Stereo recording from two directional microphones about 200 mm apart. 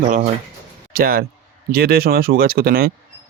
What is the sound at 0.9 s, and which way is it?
A man's voice, 45° right (ahead or behind).